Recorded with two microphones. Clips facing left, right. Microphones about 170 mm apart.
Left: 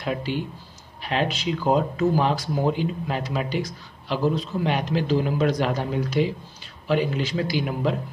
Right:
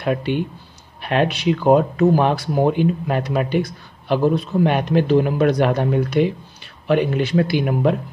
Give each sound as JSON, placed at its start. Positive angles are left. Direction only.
{"t": 0.0, "sound": "speech", "side_deg": -60}